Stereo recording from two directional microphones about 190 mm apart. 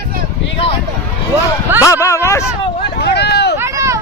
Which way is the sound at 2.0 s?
15° left (ahead or behind).